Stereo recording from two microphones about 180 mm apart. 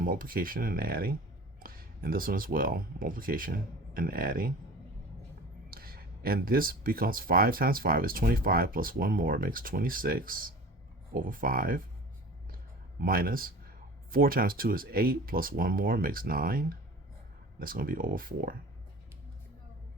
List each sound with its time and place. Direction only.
0.0 s speech: 50° right (ahead or behind)
5.7 s speech: 55° right (ahead or behind)
13.0 s speech: 55° right (ahead or behind)